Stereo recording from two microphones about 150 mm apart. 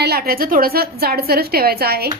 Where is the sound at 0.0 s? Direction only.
90° right.